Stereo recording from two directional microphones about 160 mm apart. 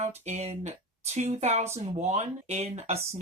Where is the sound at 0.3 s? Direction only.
45° right (ahead or behind).